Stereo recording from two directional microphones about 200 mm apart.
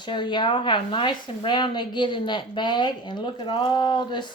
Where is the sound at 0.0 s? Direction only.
20° left (ahead or behind).